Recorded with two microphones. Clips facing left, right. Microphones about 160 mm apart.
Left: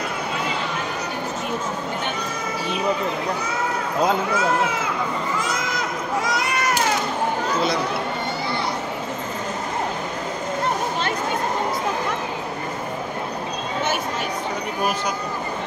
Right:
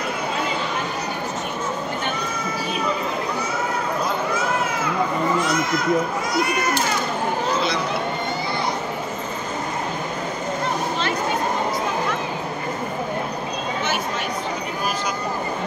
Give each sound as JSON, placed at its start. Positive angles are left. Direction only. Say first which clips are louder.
{"t": 6.2, "sound": "speech", "louder": "right 2 dB", "side_deg": 90}